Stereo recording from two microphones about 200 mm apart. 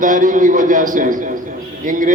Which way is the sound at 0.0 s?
40° right (ahead or behind).